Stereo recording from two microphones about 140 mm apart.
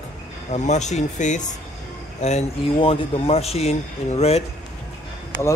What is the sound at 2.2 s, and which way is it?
A man's voice, 45° left (ahead or behind).